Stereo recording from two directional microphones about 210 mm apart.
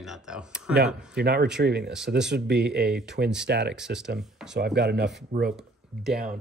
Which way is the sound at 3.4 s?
55° right (ahead or behind).